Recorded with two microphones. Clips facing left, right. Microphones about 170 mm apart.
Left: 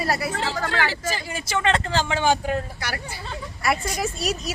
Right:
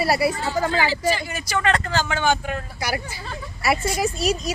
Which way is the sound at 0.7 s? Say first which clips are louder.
Right 3 dB; 60° left (ahead or behind).